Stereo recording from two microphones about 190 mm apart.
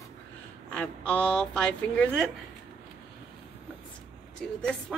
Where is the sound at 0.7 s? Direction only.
10° left (ahead or behind).